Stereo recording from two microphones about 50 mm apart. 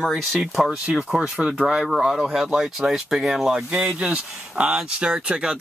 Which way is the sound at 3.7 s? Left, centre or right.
Right.